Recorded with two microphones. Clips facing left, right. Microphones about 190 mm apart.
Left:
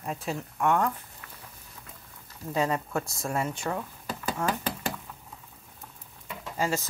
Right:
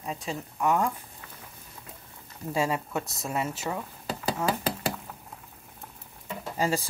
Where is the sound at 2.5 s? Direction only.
10° right (ahead or behind).